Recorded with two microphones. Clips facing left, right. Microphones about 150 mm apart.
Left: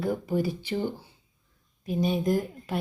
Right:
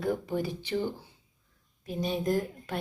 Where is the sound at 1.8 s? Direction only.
10° left (ahead or behind).